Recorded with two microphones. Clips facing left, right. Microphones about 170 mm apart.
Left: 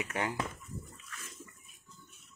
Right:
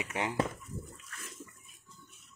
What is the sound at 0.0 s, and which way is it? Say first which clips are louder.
Speech: even; 20° right (ahead or behind).